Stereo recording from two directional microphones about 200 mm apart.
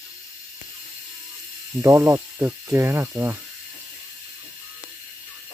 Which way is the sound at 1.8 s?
15° right (ahead or behind).